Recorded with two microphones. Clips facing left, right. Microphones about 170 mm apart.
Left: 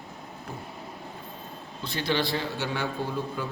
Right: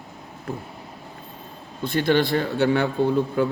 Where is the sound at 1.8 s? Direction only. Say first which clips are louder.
Right 8 dB; 50° right (ahead or behind).